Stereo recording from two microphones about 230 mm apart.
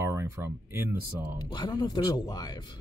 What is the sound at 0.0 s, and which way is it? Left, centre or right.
Speech, centre.